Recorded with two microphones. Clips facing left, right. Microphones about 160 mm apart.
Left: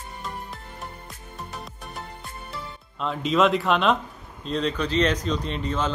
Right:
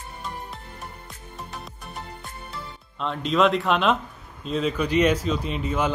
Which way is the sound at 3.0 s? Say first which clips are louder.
Even; centre (ahead or behind).